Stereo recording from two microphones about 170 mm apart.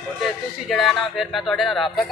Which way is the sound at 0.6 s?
Centre (ahead or behind).